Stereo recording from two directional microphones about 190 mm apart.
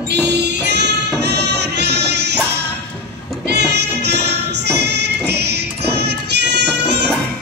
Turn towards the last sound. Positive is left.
turn(degrees=-60)  # may be behind; listen again after turning